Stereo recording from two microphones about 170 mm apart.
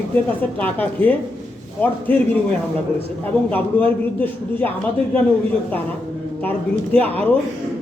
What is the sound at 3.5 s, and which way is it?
A man's voice, 10° left (ahead or behind).